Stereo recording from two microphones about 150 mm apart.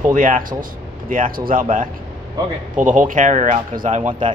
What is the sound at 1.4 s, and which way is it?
Speech, 60° right (ahead or behind).